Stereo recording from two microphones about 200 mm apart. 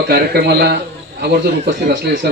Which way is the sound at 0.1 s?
50° right (ahead or behind).